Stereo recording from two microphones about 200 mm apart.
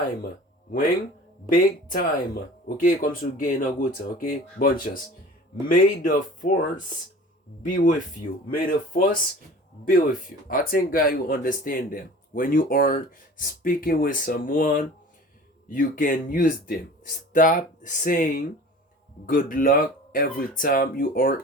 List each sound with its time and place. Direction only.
1.5 s speech: 45° left (ahead or behind)
7.7 s speech: 40° left (ahead or behind)